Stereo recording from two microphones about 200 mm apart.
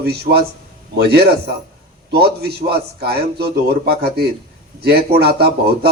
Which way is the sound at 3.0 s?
55° right (ahead or behind).